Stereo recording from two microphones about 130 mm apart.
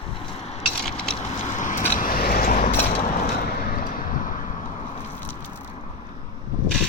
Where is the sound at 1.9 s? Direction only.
90° left; by 3.2 s 65° left (ahead or behind).